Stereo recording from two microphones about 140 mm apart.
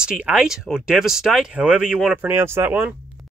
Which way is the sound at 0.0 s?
10° right (ahead or behind).